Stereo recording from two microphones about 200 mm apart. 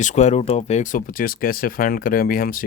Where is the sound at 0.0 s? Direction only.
35° left (ahead or behind).